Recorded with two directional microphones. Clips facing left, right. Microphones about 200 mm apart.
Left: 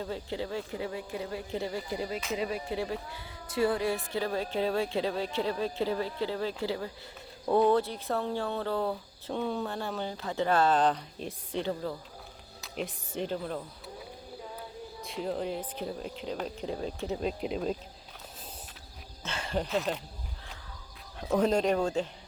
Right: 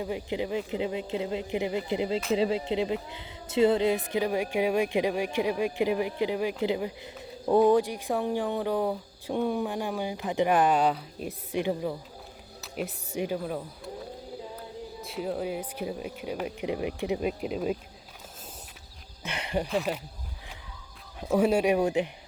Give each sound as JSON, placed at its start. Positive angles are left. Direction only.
{"t": 0.0, "sound": "a woman's voice", "side_deg": -15}
{"t": 15.0, "sound": "speech", "side_deg": -5}
{"t": 19.2, "sound": "speech", "side_deg": -15}
{"t": 19.6, "sound": "speech", "side_deg": 0}
{"t": 21.2, "sound": "speech", "side_deg": -10}